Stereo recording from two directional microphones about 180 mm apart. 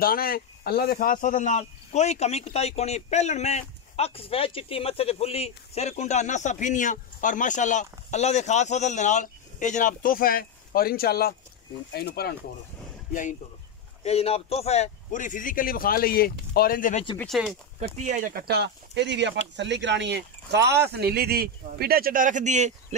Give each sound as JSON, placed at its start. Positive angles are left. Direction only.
{"t": 0.0, "sound": "speech", "side_deg": 55}
{"t": 13.1, "sound": "a man's voice", "side_deg": 45}
{"t": 17.2, "sound": "speech", "side_deg": 0}
{"t": 17.7, "sound": "speech", "side_deg": -40}
{"t": 18.3, "sound": "speech", "side_deg": -65}